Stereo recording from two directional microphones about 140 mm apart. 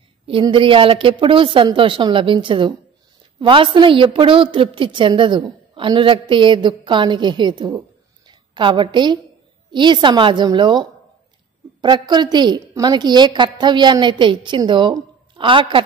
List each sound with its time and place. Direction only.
0.3 s a woman's voice: 35° right (ahead or behind)